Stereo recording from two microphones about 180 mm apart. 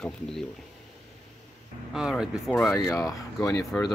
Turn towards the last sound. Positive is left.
turn(degrees=20)  # may be behind; listen again after turning